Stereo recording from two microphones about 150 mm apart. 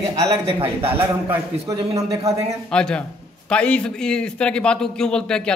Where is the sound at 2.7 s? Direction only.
5° left (ahead or behind).